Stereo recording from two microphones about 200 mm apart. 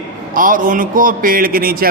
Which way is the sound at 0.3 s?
45° right (ahead or behind).